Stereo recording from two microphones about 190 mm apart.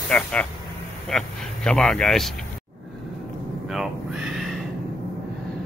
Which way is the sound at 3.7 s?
5° right (ahead or behind).